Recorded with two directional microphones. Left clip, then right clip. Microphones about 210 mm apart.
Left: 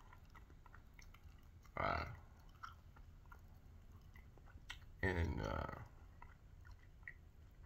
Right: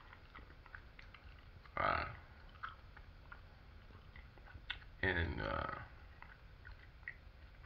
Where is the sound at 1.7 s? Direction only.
50° left (ahead or behind).